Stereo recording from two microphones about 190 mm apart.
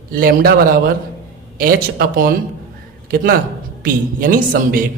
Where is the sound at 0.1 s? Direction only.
50° right (ahead or behind).